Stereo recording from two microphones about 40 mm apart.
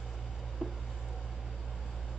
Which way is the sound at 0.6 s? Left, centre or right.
Centre.